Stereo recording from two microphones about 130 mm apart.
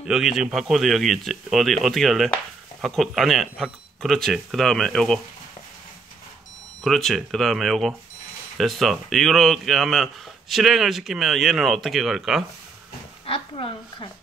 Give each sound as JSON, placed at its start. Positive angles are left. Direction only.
{"t": 0.0, "sound": "speech", "side_deg": -5}
{"t": 6.8, "sound": "speech", "side_deg": 0}
{"t": 13.2, "sound": "speech", "side_deg": 45}